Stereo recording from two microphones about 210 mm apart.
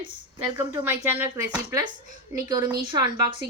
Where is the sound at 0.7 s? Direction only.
10° right (ahead or behind).